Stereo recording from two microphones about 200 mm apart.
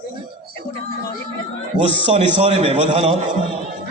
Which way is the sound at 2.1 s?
35° right (ahead or behind).